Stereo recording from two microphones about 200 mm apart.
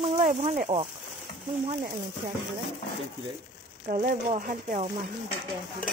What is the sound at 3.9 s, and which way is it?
Speech, 40° right (ahead or behind).